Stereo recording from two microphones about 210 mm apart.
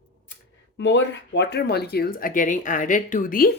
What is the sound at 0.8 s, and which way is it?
Speech, 60° left (ahead or behind).